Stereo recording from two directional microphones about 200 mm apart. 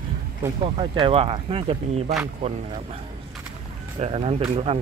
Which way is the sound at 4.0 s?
30° right (ahead or behind).